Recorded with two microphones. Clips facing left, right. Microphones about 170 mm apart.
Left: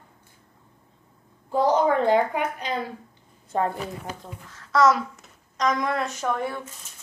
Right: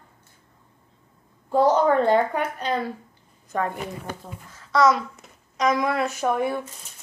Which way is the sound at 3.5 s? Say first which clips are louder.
Left 2 dB; 25° left (ahead or behind).